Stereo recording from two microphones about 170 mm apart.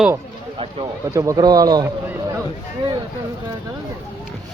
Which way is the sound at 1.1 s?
20° right (ahead or behind).